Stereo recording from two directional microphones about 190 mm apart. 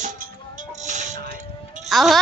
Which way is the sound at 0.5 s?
40° right (ahead or behind).